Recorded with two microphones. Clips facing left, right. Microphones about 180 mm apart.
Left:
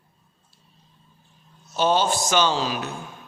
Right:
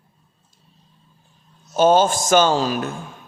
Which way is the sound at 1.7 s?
45° right (ahead or behind).